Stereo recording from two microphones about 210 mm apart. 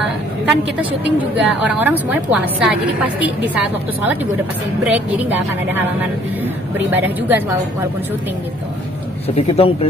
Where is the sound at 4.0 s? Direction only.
10° right (ahead or behind).